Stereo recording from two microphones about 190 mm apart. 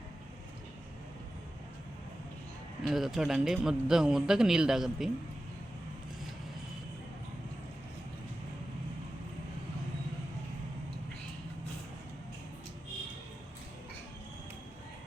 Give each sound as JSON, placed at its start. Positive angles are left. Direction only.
{"t": 2.8, "sound": "a man's voice", "side_deg": 0}